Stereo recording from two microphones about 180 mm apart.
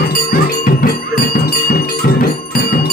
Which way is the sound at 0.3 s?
50° left (ahead or behind).